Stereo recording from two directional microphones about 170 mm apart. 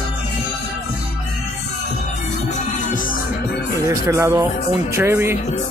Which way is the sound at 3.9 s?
20° right (ahead or behind).